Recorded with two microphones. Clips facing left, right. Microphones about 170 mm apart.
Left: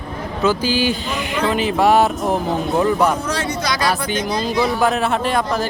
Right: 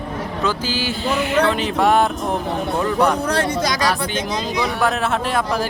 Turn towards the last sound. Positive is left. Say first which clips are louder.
# left 1 dB
turn(degrees=-5)  # may be behind; listen again after turning